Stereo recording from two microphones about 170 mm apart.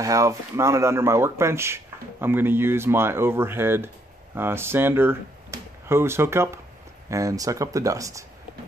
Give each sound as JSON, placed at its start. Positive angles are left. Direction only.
{"t": 0.0, "sound": "speech", "side_deg": -20}